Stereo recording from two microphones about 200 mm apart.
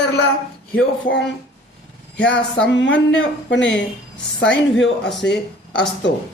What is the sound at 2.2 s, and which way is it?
Speech, 70° left (ahead or behind).